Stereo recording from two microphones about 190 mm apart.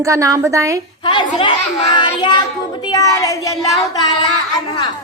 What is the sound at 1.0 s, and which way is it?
A child's voice, 25° left (ahead or behind).